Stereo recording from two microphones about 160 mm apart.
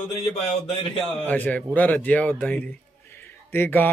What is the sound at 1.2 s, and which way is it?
Speech, 10° left (ahead or behind).